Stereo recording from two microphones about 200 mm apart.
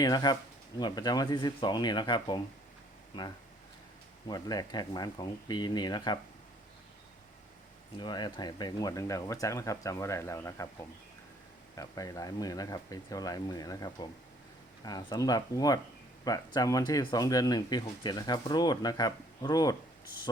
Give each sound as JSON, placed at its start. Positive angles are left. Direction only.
{"t": 0.0, "sound": "speech", "side_deg": 20}
{"t": 4.3, "sound": "speech", "side_deg": 20}
{"t": 7.9, "sound": "speech", "side_deg": 20}